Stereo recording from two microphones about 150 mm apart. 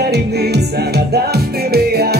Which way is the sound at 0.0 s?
90° right.